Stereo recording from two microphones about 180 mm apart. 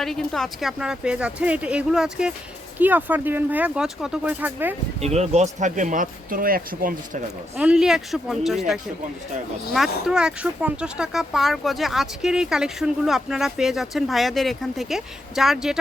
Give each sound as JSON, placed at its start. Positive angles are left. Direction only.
{"t": 0.0, "sound": "speech", "side_deg": 0}
{"t": 4.9, "sound": "speech", "side_deg": -35}
{"t": 7.5, "sound": "speech", "side_deg": -5}